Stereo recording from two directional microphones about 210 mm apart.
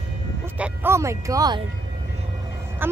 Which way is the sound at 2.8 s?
10° right (ahead or behind).